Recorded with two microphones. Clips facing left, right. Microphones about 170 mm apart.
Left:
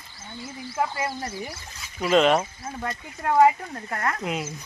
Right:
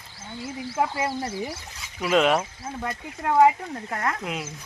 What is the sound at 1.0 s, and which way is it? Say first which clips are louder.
Speech: right 3 dB; 25° right (ahead or behind).